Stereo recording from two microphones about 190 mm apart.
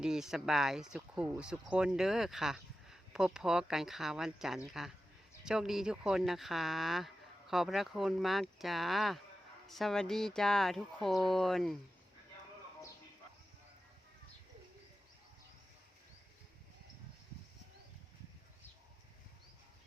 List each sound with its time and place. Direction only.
0.0 s speech: 5° right (ahead or behind)